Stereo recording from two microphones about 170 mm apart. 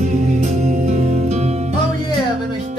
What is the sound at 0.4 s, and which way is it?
Music, 40° right (ahead or behind).